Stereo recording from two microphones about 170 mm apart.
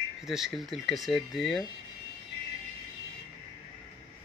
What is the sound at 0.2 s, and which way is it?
Speech, centre (ahead or behind).